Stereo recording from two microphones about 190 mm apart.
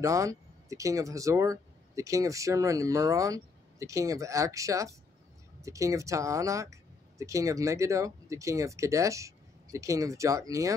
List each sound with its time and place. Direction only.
0.0 s speech: 15° right (ahead or behind)